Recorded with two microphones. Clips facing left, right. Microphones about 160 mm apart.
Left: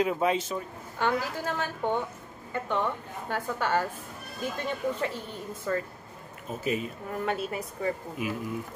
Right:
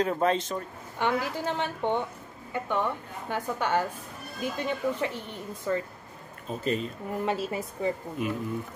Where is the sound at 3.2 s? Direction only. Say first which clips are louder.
Right 1 dB; 15° right (ahead or behind).